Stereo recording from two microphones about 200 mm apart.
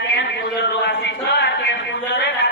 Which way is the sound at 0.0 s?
60° left (ahead or behind).